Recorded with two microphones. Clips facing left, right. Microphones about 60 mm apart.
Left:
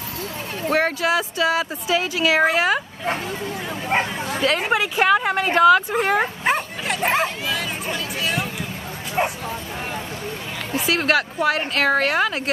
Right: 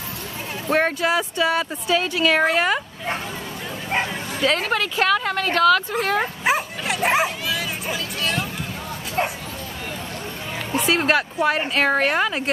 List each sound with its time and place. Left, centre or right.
0.7 s speech: centre
4.4 s speech: centre
4.6 s speech: centre
5.9 s speech: centre
6.4 s bow-wow: centre
10.9 s speech: centre